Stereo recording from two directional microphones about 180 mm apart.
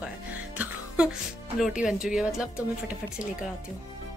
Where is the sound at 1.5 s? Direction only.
5° right (ahead or behind).